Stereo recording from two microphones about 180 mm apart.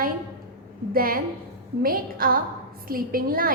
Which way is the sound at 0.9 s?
55° right (ahead or behind).